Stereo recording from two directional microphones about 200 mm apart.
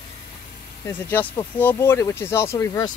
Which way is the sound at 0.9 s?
10° left (ahead or behind).